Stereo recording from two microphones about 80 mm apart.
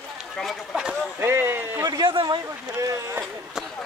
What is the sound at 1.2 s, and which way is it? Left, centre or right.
Speech, right.